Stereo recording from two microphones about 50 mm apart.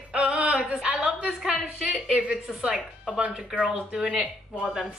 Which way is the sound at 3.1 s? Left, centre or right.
Right.